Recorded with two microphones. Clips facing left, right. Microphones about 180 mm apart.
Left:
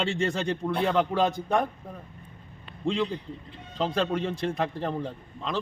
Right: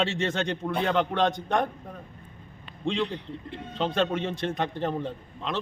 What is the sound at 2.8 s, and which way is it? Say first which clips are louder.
Speech: left 1 dB; centre (ahead or behind).